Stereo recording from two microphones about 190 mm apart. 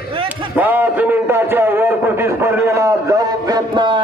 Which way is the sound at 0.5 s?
10° right (ahead or behind).